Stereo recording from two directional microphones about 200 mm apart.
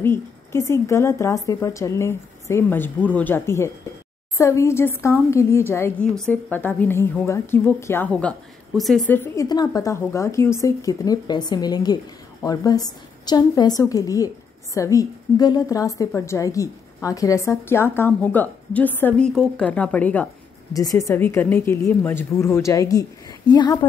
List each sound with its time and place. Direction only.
0.0 s a woman's voice: 10° left (ahead or behind)
20.7 s a woman's voice: 15° left (ahead or behind)